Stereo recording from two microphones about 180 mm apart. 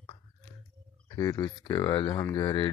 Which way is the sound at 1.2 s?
20° left (ahead or behind).